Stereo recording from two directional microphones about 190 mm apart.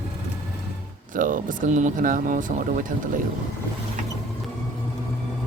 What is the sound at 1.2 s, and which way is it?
Speech, 45° right (ahead or behind).